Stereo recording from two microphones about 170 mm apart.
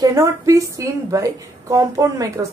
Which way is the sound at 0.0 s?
20° right (ahead or behind).